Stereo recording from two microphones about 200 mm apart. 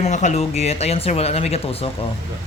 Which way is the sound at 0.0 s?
35° left (ahead or behind).